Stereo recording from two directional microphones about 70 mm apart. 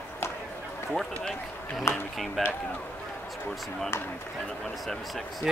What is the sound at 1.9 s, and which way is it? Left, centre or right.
Speech, left.